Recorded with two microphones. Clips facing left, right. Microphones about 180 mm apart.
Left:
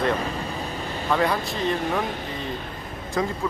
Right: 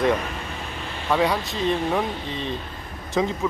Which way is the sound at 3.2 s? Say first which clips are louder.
Right 3 dB; 20° right (ahead or behind).